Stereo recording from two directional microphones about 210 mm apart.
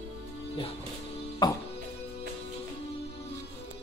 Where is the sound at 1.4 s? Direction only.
20° left (ahead or behind).